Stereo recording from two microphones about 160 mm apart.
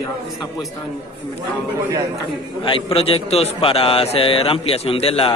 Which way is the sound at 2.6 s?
35° left (ahead or behind).